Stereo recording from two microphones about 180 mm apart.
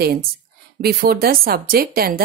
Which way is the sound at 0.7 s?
60° right (ahead or behind).